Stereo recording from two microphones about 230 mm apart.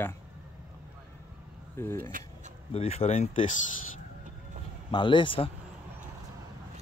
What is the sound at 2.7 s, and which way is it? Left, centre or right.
Speech, left.